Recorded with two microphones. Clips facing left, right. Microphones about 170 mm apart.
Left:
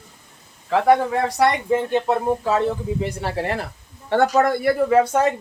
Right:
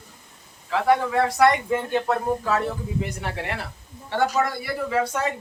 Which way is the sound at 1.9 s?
25° left (ahead or behind).